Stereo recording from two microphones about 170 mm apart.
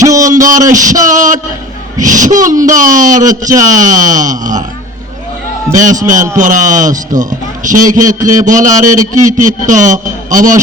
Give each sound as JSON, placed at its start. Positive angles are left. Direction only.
{"t": 0.0, "sound": "a sound", "side_deg": -20}
{"t": 0.4, "sound": "speech", "side_deg": -50}
{"t": 5.7, "sound": "speech", "side_deg": -50}